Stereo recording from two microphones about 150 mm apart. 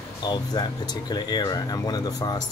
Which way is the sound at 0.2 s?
30° left (ahead or behind).